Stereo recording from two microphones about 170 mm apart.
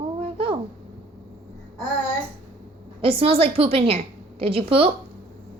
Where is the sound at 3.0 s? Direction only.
35° right (ahead or behind).